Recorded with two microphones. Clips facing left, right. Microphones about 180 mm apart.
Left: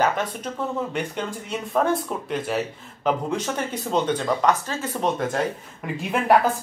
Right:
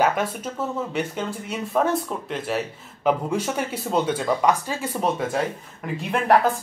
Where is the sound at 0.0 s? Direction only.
5° right (ahead or behind).